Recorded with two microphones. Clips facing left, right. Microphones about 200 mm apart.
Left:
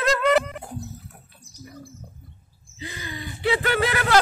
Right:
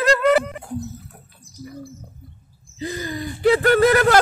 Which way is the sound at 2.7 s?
40° right (ahead or behind).